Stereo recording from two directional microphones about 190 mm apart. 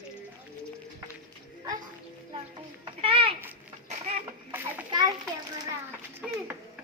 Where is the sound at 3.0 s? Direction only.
30° right (ahead or behind).